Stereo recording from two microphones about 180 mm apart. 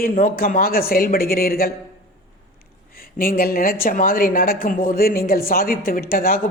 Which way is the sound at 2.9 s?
55° left (ahead or behind).